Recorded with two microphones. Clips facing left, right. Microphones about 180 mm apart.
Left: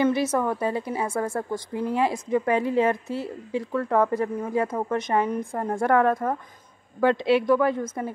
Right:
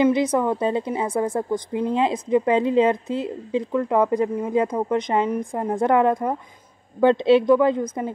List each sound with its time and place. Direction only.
0.0 s a woman's voice: 15° right (ahead or behind)